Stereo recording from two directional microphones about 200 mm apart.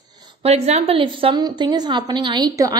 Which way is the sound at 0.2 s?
30° right (ahead or behind).